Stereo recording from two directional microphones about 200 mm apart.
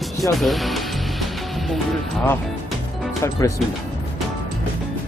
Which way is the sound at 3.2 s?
15° left (ahead or behind).